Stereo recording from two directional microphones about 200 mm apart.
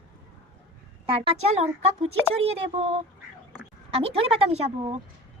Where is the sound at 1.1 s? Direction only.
30° right (ahead or behind).